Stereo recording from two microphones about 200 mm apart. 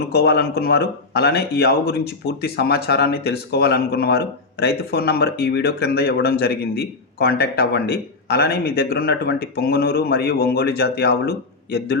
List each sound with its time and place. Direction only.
0.1 s speech: 50° left (ahead or behind)